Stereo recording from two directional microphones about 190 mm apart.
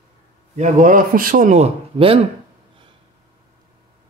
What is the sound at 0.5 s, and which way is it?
A man's voice, 40° right (ahead or behind).